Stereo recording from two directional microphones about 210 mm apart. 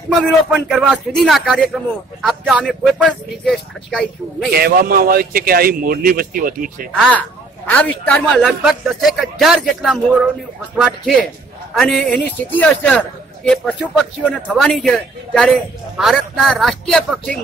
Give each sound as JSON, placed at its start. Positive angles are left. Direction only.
{"t": 0.2, "sound": "speech", "side_deg": 0}
{"t": 4.6, "sound": "a man's voice", "side_deg": -45}
{"t": 6.9, "sound": "a woman's voice", "side_deg": 5}
{"t": 11.7, "sound": "speech", "side_deg": 0}